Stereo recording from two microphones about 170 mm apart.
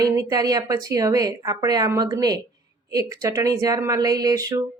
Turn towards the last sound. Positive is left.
turn(degrees=-20)  # may be behind; listen again after turning